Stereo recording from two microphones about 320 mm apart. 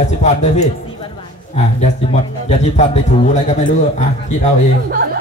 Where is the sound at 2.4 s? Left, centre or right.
Left.